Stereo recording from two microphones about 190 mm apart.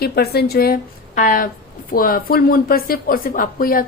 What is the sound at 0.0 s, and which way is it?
Speech, 55° left (ahead or behind).